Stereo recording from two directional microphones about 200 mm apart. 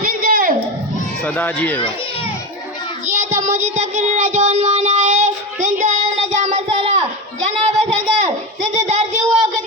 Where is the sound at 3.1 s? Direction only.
35° right (ahead or behind).